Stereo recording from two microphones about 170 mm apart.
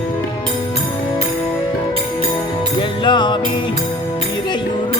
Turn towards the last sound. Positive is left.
turn(degrees=25)  # may be behind; listen again after turning